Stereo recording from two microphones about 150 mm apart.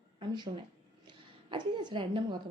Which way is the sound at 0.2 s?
30° right (ahead or behind).